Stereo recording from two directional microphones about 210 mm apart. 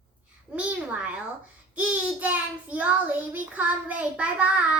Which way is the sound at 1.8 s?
5° right (ahead or behind).